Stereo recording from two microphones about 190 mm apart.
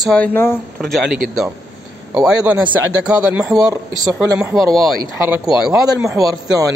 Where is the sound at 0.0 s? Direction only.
5° left (ahead or behind).